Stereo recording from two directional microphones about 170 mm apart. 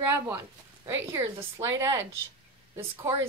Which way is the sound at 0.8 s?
15° right (ahead or behind).